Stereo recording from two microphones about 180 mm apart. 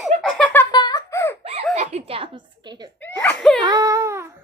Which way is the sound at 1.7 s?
40° right (ahead or behind).